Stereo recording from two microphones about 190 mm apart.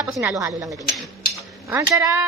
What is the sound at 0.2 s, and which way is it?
Speech, 15° right (ahead or behind).